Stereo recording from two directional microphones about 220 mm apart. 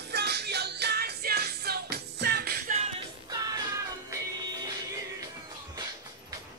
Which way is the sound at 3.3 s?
15° right (ahead or behind).